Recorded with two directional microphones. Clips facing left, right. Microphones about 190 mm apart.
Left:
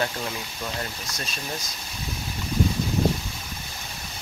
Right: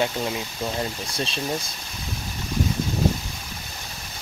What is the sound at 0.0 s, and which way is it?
Speech, 20° right (ahead or behind).